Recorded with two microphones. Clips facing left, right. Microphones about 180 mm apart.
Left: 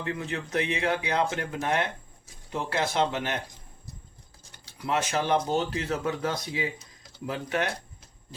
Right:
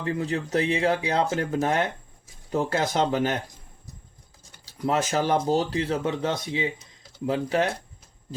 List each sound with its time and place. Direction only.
0.0 s speech: 35° right (ahead or behind)
4.9 s speech: 40° right (ahead or behind)